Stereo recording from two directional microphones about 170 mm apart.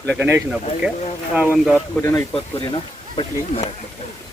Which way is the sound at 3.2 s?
40° left (ahead or behind).